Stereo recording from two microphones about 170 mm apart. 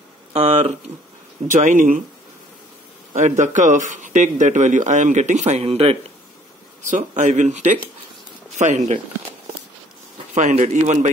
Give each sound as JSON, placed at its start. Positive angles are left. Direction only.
{"t": 0.3, "sound": "speech", "side_deg": -40}
{"t": 3.2, "sound": "speech", "side_deg": -45}
{"t": 6.9, "sound": "speech", "side_deg": -45}
{"t": 10.3, "sound": "speech", "side_deg": -45}